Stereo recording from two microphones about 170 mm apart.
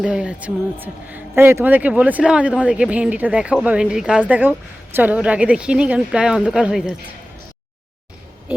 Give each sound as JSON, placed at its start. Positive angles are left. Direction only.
{"t": 0.0, "sound": "speech", "side_deg": -5}